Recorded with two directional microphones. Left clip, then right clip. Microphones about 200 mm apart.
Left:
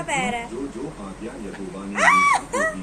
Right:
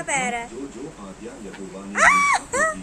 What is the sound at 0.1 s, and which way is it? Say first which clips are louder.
Speech: even; 25° right (ahead or behind).